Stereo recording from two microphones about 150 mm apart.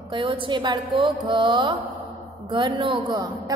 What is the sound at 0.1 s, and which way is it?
A woman's voice, 35° right (ahead or behind).